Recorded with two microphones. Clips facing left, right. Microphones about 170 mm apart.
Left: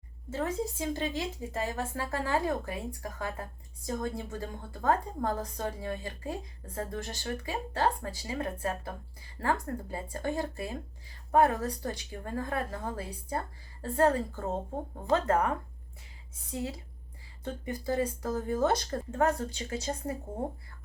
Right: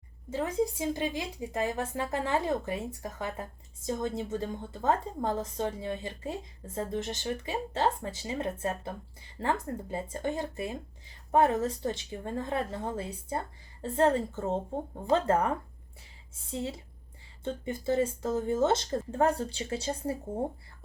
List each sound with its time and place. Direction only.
0.3 s speech: 15° right (ahead or behind)